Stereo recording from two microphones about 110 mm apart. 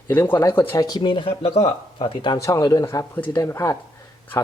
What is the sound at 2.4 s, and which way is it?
Speech, 30° left (ahead or behind).